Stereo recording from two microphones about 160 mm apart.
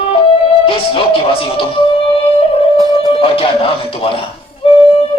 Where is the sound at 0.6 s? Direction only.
35° left (ahead or behind).